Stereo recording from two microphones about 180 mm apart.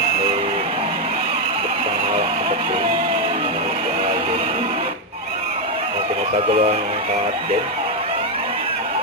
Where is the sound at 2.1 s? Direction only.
35° right (ahead or behind).